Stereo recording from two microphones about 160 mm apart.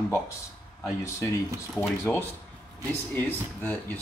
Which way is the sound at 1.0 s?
15° left (ahead or behind).